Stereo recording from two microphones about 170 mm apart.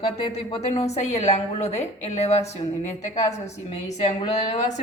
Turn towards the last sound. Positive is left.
turn(degrees=40)  # may be behind; listen again after turning